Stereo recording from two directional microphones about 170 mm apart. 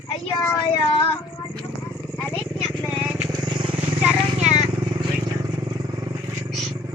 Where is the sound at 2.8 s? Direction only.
5° right (ahead or behind).